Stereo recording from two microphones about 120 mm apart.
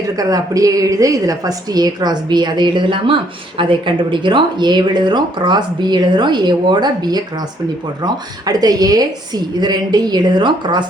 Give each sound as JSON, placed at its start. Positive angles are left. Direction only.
{"t": 0.2, "sound": "speech", "side_deg": -30}